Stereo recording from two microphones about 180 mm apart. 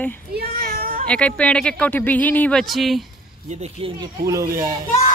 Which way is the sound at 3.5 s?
35° right (ahead or behind).